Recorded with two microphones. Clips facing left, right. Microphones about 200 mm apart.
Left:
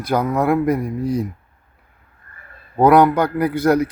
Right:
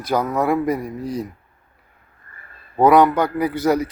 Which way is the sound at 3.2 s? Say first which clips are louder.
Left 2 dB; centre (ahead or behind).